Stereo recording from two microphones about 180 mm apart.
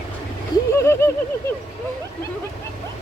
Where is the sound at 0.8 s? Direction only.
15° left (ahead or behind).